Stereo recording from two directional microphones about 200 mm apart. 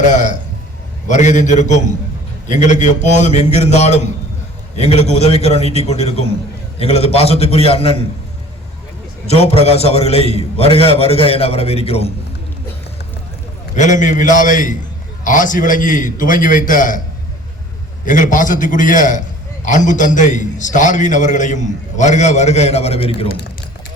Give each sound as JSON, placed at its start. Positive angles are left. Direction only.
{"t": 0.0, "sound": "a man's voice", "side_deg": 35}
{"t": 9.3, "sound": "a man's voice", "side_deg": 30}
{"t": 13.7, "sound": "a man's voice", "side_deg": 35}
{"t": 18.0, "sound": "a man's voice", "side_deg": 40}